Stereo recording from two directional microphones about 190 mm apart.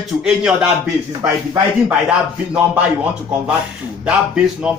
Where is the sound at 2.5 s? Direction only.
10° right (ahead or behind).